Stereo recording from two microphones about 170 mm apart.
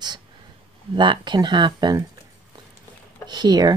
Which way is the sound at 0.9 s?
30° right (ahead or behind).